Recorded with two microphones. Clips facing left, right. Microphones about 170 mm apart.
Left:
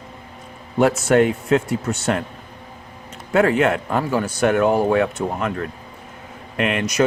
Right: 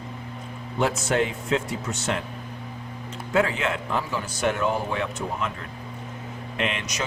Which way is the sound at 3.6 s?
55° left (ahead or behind).